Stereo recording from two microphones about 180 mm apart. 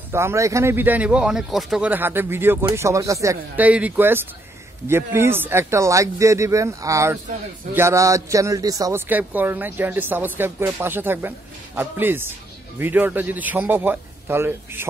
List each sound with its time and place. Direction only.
0.1 s a man's voice: 15° right (ahead or behind)